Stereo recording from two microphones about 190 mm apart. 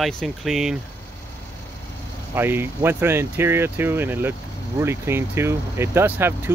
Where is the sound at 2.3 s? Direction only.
10° right (ahead or behind).